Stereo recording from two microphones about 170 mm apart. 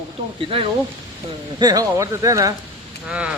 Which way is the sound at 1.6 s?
20° right (ahead or behind).